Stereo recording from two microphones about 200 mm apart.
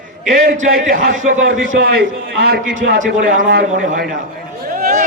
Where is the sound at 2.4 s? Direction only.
50° right (ahead or behind).